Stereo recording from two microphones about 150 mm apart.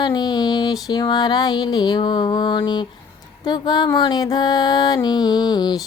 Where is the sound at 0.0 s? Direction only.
30° left (ahead or behind).